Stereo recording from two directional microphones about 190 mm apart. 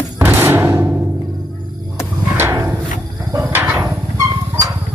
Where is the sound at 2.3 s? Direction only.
15° right (ahead or behind).